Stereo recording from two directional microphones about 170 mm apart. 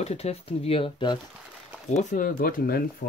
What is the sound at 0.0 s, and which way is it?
Speech, 40° left (ahead or behind).